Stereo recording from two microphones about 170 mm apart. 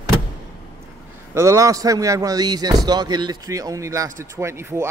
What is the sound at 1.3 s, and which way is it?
Speech, 20° right (ahead or behind).